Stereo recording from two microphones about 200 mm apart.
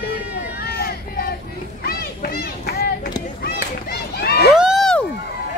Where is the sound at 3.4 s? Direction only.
55° left (ahead or behind).